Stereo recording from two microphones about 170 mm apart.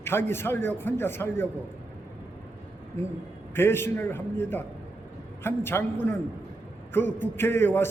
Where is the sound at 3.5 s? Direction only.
15° left (ahead or behind).